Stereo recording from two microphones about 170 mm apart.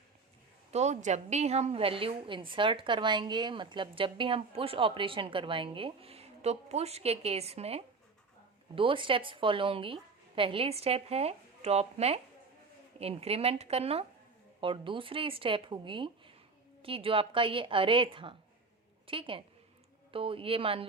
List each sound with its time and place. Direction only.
0.7 s a woman's voice: 40° right (ahead or behind)